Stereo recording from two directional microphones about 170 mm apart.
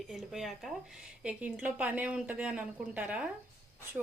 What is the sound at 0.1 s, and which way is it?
A woman's voice, centre (ahead or behind).